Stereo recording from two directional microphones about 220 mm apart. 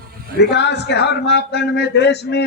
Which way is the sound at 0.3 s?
50° left (ahead or behind).